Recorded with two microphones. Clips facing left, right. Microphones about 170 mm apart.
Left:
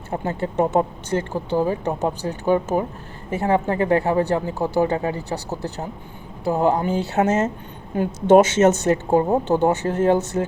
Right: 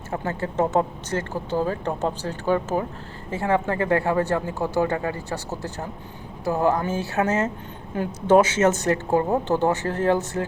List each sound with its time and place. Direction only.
0.1 s speech: 20° left (ahead or behind)